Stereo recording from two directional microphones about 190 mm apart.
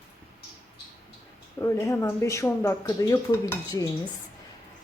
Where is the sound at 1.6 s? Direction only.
15° left (ahead or behind).